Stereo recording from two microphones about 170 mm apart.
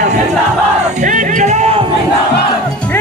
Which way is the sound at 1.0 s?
50° right (ahead or behind).